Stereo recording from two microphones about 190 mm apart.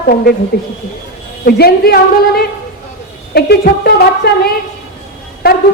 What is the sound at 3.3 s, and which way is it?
A woman's voice, 55° left (ahead or behind).